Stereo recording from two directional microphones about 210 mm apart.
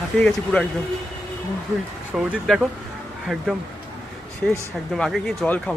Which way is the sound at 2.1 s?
5° right (ahead or behind).